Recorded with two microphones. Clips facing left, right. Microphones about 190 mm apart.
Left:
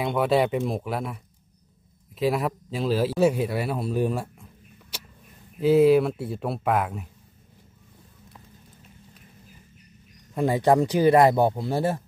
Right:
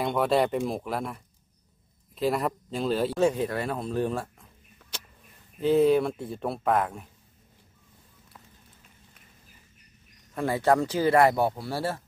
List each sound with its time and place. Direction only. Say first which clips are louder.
0.0 s speech: left 2 dB; centre (ahead or behind)
5.6 s speech: left 4 dB; 5° left (ahead or behind)
10.3 s speech: left 3 dB; 15° left (ahead or behind)